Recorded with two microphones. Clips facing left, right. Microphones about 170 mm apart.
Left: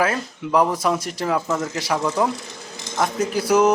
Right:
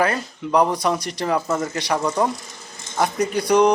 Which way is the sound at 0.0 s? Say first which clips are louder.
Right 1 dB; centre (ahead or behind).